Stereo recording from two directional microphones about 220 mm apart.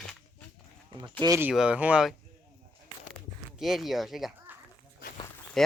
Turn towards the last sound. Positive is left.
turn(degrees=0)  # may be behind; listen again after turning